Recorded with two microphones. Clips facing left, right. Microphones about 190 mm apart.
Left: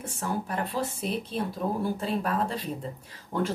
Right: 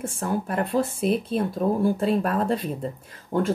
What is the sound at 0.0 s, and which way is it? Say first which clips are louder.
Speech: right 5 dB; 50° right (ahead or behind).